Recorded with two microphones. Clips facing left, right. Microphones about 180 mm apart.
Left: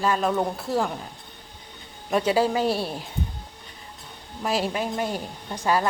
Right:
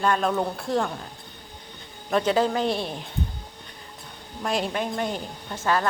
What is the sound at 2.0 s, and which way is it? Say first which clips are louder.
Speech: even; 10° left (ahead or behind).